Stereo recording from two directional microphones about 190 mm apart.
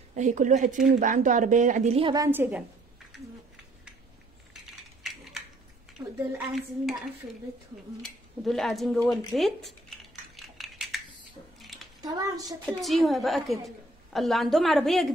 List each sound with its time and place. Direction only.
0.1 s speech: 40° right (ahead or behind)
2.2 s a woman's voice: 10° right (ahead or behind)
5.0 s a sound: centre (ahead or behind)
6.0 s speech: 20° right (ahead or behind)
8.5 s a woman's voice: centre (ahead or behind)
9.3 s dishes: centre (ahead or behind)
11.6 s a sound: centre (ahead or behind)
12.0 s speech: 20° right (ahead or behind)
12.6 s a woman's voice: centre (ahead or behind)